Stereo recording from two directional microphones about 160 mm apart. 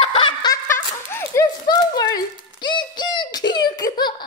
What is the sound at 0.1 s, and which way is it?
Snicker, 30° left (ahead or behind).